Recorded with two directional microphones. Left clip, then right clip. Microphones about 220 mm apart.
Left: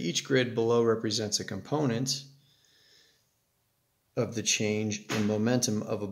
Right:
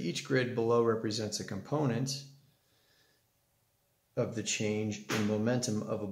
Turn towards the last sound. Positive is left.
turn(degrees=35)  # may be behind; listen again after turning